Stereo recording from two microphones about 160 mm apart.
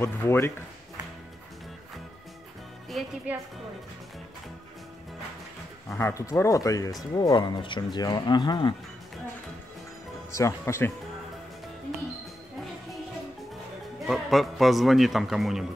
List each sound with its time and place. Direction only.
0.0 s speech: 15° left (ahead or behind)
3.3 s a woman's voice: 10° right (ahead or behind)
5.9 s speech: 15° left (ahead or behind)
10.3 s speech: 20° left (ahead or behind)
14.0 s speech: centre (ahead or behind)